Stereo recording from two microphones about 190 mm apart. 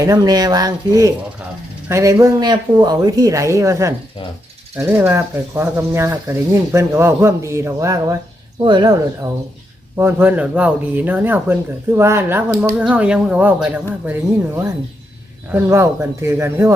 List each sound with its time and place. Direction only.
0.0 s speech: 20° right (ahead or behind)
10.0 s speech: 10° right (ahead or behind)